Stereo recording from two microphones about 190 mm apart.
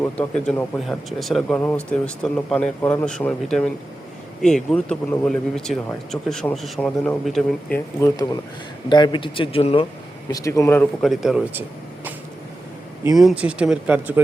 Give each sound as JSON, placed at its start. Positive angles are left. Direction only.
{"t": 0.0, "sound": "speech", "side_deg": 5}
{"t": 8.0, "sound": "speech", "side_deg": 20}
{"t": 10.3, "sound": "speech", "side_deg": 15}
{"t": 11.0, "sound": "speech", "side_deg": 0}
{"t": 13.1, "sound": "speech", "side_deg": -5}